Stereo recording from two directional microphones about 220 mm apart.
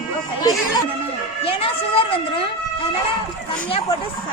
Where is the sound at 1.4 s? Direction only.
25° left (ahead or behind).